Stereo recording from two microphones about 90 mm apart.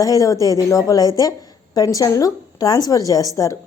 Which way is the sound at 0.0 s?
40° left (ahead or behind).